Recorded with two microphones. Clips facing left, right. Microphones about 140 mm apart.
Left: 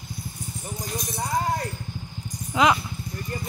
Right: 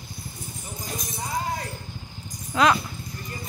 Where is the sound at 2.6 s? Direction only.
20° left (ahead or behind).